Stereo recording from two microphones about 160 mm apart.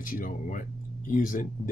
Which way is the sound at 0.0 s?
55° left (ahead or behind).